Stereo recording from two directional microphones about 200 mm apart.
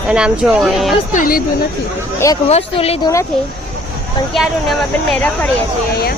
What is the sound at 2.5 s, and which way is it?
Speech, 30° left (ahead or behind).